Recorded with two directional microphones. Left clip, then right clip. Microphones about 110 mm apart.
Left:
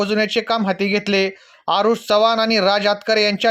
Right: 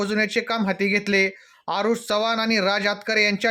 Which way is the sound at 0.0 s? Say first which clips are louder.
Left 4 dB; 20° left (ahead or behind).